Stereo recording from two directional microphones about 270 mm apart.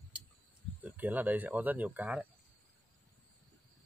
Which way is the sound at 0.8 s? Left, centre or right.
Centre.